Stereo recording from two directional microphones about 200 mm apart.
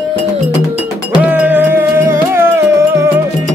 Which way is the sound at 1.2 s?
10° right (ahead or behind).